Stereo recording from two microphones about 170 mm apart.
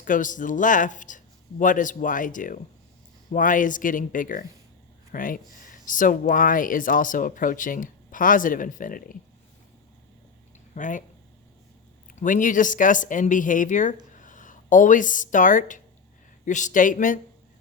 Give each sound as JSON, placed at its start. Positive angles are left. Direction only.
{"t": 0.0, "sound": "speech", "side_deg": 50}
{"t": 10.8, "sound": "speech", "side_deg": 50}
{"t": 12.1, "sound": "speech", "side_deg": 50}